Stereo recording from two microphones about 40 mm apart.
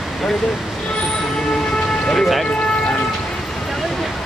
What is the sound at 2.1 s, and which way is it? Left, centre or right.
Speech, centre.